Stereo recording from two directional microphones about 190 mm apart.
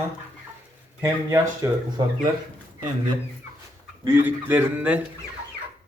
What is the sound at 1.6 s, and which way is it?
Speech, 20° right (ahead or behind).